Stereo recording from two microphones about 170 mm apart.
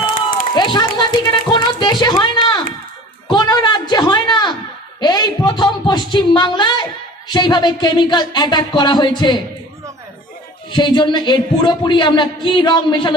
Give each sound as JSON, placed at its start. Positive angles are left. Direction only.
{"t": 0.6, "sound": "a sound", "side_deg": 25}
{"t": 5.0, "sound": "speech", "side_deg": 25}
{"t": 10.7, "sound": "speech", "side_deg": 25}